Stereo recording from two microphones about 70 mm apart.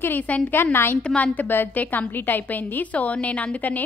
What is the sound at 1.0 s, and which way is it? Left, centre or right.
A woman's voice, centre.